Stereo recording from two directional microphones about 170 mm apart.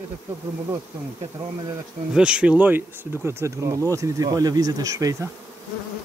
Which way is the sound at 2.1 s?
5° right (ahead or behind).